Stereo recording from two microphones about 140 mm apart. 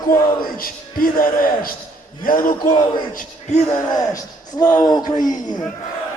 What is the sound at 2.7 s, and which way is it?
Speech, 35° left (ahead or behind).